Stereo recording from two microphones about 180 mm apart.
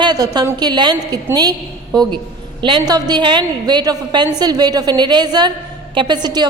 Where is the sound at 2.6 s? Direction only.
25° right (ahead or behind).